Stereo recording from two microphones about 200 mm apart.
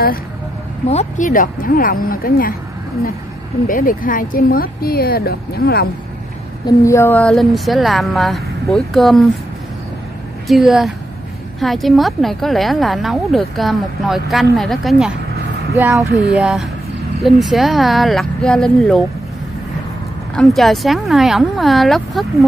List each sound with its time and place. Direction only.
0.8 s speech: 35° left (ahead or behind)
3.6 s speech: 45° left (ahead or behind)
6.6 s a woman's voice: 15° left (ahead or behind)
10.5 s a woman's voice: centre (ahead or behind)
15.7 s speech: 15° right (ahead or behind)
16.3 s a woman's voice: 5° right (ahead or behind)
20.3 s a woman's voice: centre (ahead or behind)